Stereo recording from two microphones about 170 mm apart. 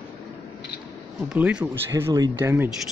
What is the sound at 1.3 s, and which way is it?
Speech, 5° right (ahead or behind).